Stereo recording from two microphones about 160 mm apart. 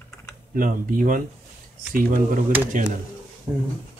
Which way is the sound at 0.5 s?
60° right (ahead or behind).